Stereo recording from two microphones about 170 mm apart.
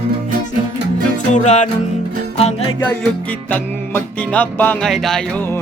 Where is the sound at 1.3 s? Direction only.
45° left (ahead or behind).